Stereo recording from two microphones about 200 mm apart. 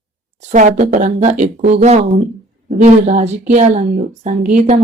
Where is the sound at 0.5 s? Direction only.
40° right (ahead or behind).